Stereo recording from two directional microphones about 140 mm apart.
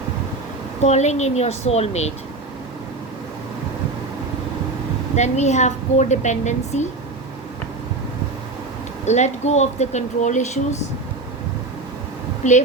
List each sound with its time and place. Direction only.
0.8 s a woman's voice: 55° left (ahead or behind)
5.1 s a woman's voice: 55° left (ahead or behind)
9.0 s a woman's voice: 55° left (ahead or behind)
12.4 s speech: 60° left (ahead or behind)